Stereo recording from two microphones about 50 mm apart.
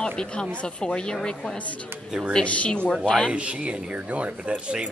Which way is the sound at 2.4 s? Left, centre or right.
Left.